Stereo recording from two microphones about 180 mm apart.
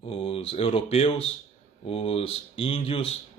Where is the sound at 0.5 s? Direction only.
30° left (ahead or behind).